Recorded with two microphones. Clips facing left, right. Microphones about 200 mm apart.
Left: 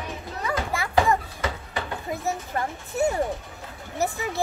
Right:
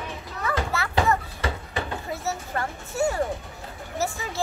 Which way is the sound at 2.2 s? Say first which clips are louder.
Left 2 dB; 20° left (ahead or behind).